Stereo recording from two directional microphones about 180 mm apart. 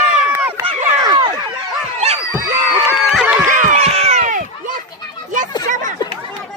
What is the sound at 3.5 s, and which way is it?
Cat, 45° right (ahead or behind).